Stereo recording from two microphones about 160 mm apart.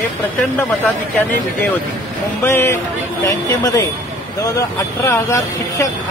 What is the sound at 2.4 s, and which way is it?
Speech, 15° left (ahead or behind).